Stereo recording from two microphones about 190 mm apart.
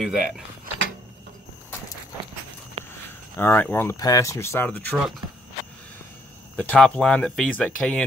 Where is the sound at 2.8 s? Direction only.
35° right (ahead or behind).